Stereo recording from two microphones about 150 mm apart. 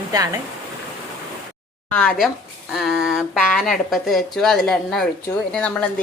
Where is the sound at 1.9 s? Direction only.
5° left (ahead or behind).